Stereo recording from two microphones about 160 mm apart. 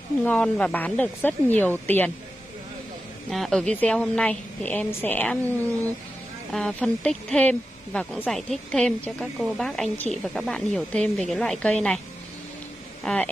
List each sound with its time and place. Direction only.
0.2 s speech: 5° left (ahead or behind)
3.3 s a woman's voice: centre (ahead or behind)
6.5 s a woman's voice: 5° left (ahead or behind)
13.0 s a woman's voice: 5° left (ahead or behind)